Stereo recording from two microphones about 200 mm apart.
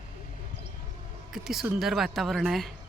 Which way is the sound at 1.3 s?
Centre (ahead or behind).